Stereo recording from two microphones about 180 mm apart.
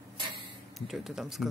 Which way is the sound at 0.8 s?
Centre (ahead or behind).